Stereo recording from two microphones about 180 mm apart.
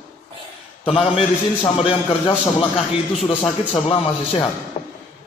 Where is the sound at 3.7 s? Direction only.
35° left (ahead or behind).